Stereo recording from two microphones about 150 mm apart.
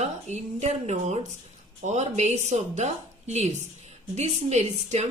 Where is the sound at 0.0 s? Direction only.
50° right (ahead or behind).